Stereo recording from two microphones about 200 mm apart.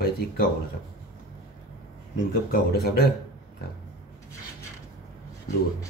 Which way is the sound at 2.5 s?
50° left (ahead or behind).